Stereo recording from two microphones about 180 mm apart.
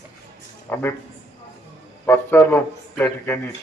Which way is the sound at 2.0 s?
15° left (ahead or behind).